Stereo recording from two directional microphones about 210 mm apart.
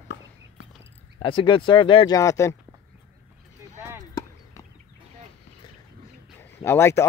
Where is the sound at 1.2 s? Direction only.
25° left (ahead or behind).